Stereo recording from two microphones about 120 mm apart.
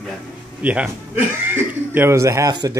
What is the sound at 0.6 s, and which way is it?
Speech, 10° right (ahead or behind).